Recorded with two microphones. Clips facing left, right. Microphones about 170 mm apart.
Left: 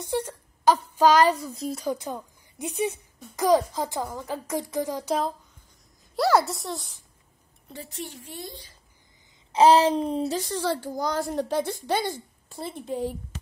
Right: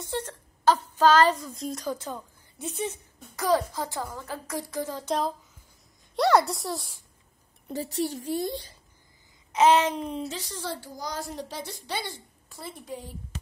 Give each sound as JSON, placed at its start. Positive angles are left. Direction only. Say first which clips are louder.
{"t": 0.0, "sound": "speech", "louder": "left 4 dB", "side_deg": 10}
{"t": 6.1, "sound": "a woman's voice", "louder": "even", "side_deg": 0}
{"t": 7.7, "sound": "a woman's voice", "louder": "right 8 dB", "side_deg": -35}
{"t": 9.5, "sound": "speech", "louder": "left 3 dB", "side_deg": 35}
{"t": 10.4, "sound": "a child's voice", "louder": "left 8 dB", "side_deg": 75}
{"t": 10.8, "sound": "a woman's voice", "louder": "left 8 dB", "side_deg": 55}
{"t": 12.4, "sound": "a woman's voice", "louder": "left 6 dB", "side_deg": 25}